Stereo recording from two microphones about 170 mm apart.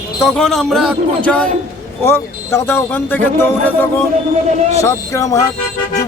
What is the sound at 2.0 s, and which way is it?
A man's voice, 15° left (ahead or behind).